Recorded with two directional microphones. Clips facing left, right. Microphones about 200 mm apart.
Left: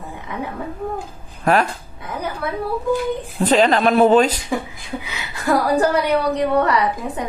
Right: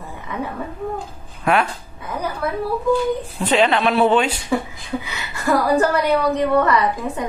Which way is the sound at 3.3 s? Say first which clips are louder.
Left 3 dB; 40° left (ahead or behind).